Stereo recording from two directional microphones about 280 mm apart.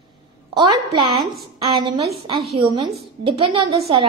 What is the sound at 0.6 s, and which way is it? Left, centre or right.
A woman's voice, centre.